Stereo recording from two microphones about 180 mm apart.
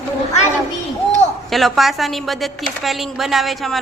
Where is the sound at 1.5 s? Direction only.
Centre (ahead or behind).